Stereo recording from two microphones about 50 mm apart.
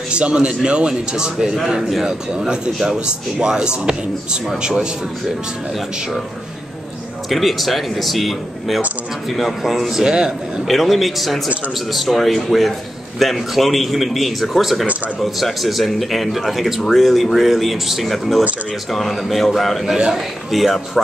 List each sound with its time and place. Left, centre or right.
0.1 s a man's voice: right
1.7 s a man's voice: centre
2.3 s speech: centre
7.2 s a man's voice: centre